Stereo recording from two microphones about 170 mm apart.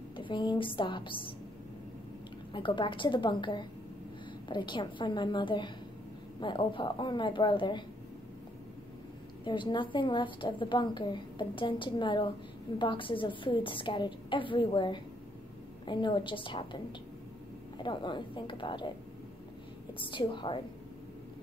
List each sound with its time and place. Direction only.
0.1 s a woman's voice: 30° left (ahead or behind)
2.5 s a woman's voice: 30° left (ahead or behind)
9.4 s a woman's voice: 30° left (ahead or behind)
17.8 s a woman's voice: 25° left (ahead or behind)
20.0 s a woman's voice: 30° left (ahead or behind)